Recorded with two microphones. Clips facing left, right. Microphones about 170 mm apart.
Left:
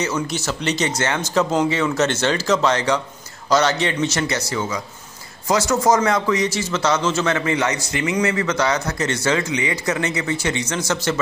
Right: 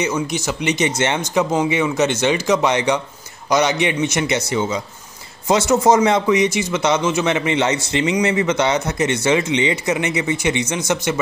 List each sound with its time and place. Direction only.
0.0 s a man's voice: 15° right (ahead or behind)